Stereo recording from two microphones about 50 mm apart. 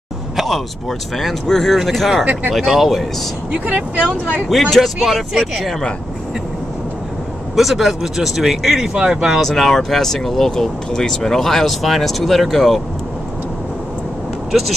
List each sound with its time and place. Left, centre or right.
0.4 s speech: centre
3.6 s speech: right
4.5 s speech: centre
7.5 s speech: centre
9.4 s speech: centre